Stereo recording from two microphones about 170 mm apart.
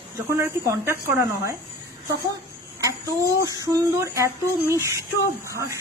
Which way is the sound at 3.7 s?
20° right (ahead or behind).